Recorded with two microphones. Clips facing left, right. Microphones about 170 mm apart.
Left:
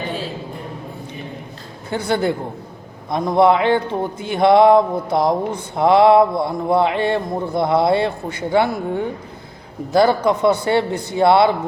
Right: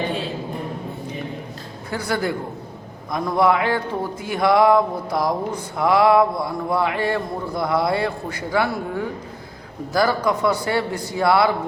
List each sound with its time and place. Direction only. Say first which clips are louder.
1.9 s speech: left 4 dB; 25° left (ahead or behind)